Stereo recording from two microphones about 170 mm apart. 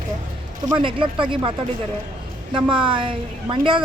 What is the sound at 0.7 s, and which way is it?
Speech, 30° right (ahead or behind).